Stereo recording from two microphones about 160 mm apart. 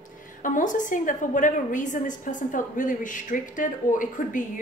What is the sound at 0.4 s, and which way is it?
A woman's voice, 55° left (ahead or behind).